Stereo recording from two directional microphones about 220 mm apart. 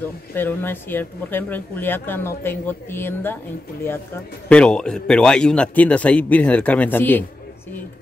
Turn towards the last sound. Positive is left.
turn(degrees=10)  # may be behind; listen again after turning